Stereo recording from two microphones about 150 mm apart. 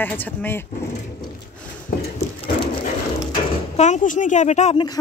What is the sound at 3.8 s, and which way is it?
Speech, 55° left (ahead or behind).